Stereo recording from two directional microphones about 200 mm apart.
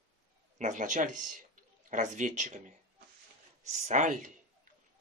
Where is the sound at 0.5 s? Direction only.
40° right (ahead or behind).